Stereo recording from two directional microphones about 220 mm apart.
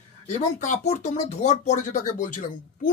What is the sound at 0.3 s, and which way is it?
Speech, 35° left (ahead or behind).